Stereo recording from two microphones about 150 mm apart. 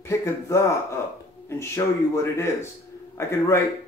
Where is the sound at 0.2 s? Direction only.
20° left (ahead or behind).